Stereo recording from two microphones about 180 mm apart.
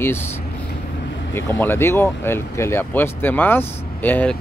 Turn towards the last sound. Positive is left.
turn(degrees=10)  # may be behind; listen again after turning